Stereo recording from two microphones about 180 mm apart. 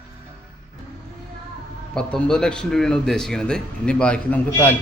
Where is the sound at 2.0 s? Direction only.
5° left (ahead or behind).